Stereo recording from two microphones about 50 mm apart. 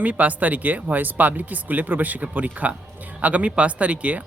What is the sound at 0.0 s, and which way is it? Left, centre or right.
Speech, right.